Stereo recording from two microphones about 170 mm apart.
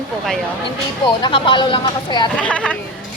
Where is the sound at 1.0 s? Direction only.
30° left (ahead or behind).